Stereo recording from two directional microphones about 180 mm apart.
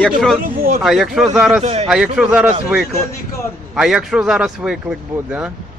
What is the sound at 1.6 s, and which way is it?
Speech, 35° right (ahead or behind).